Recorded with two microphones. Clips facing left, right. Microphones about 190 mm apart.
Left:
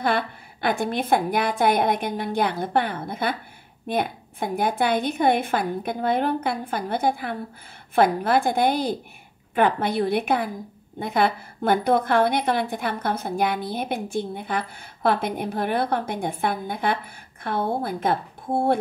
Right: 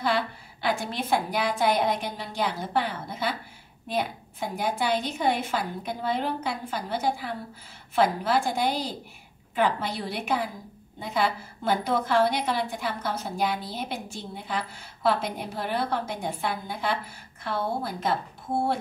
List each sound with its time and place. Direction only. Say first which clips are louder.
0.0 s a woman's voice: left 3 dB; 55° left (ahead or behind)